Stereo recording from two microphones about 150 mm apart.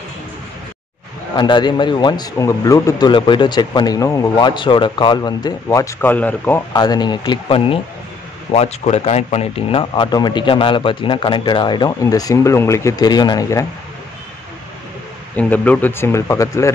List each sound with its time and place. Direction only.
1.3 s speech: 30° left (ahead or behind); by 6.6 s 10° left (ahead or behind)
6.7 s speech: 25° left (ahead or behind)
15.3 s speech: 10° left (ahead or behind)